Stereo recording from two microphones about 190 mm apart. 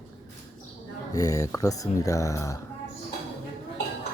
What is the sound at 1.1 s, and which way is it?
Speech, 15° left (ahead or behind).